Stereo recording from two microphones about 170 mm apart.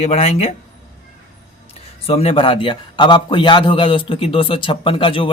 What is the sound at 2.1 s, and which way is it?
A man's voice, 35° left (ahead or behind).